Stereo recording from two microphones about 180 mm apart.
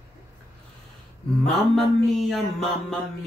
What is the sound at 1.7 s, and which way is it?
Speech, centre (ahead or behind).